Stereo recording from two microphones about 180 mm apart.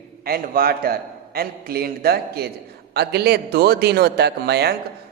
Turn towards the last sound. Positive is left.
turn(degrees=-65)  # may be behind; listen again after turning